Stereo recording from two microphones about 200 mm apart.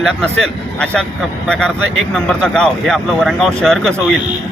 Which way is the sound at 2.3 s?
5° left (ahead or behind).